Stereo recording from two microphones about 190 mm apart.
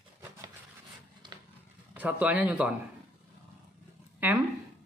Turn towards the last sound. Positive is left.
turn(degrees=-10)  # may be behind; listen again after turning